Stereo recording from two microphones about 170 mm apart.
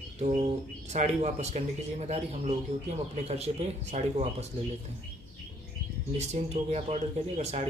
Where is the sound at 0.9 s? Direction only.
40° right (ahead or behind).